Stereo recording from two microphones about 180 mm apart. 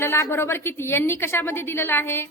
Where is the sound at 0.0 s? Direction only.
15° left (ahead or behind).